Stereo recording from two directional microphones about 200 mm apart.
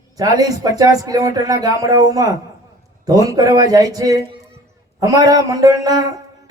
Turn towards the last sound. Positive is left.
turn(degrees=-20)  # may be behind; listen again after turning